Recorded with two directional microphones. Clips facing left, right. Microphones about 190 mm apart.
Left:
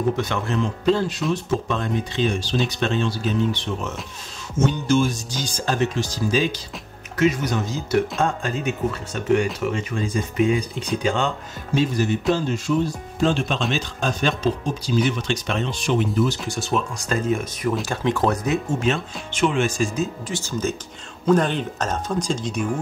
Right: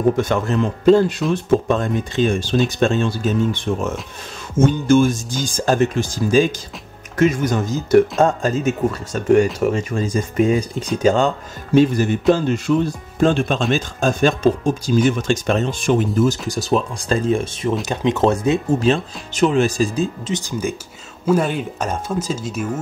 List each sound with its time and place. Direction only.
0.2 s speech: 45° right (ahead or behind)
11.7 s speech: 55° right (ahead or behind); by 20.1 s 35° right (ahead or behind)
20.2 s speech: 15° right (ahead or behind)